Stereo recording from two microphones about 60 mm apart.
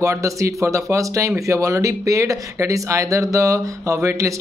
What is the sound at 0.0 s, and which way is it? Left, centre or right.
A man's voice, right.